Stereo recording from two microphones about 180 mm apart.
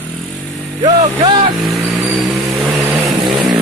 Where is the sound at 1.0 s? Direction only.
30° right (ahead or behind).